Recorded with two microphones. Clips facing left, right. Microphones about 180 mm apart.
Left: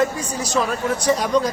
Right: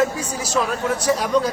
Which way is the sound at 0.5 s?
5° right (ahead or behind).